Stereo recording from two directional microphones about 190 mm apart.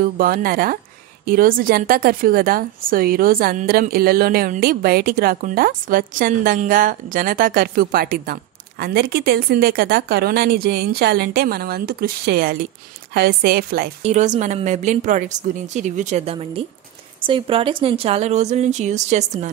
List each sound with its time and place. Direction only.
0.0 s a woman's voice: 50° right (ahead or behind)
14.0 s speech: 40° right (ahead or behind)